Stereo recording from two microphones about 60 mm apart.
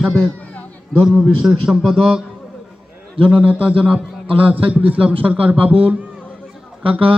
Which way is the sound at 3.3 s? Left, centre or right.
Right.